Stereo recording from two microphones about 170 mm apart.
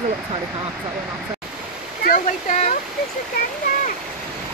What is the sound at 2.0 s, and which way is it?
Speech, 50° left (ahead or behind).